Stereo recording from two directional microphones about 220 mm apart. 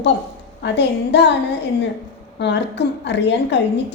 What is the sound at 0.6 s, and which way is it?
Speech, 50° left (ahead or behind).